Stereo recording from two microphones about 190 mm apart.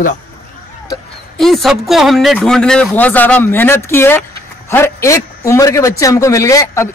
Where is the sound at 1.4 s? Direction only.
Centre (ahead or behind).